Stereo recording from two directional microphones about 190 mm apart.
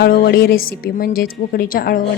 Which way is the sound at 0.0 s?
55° left (ahead or behind).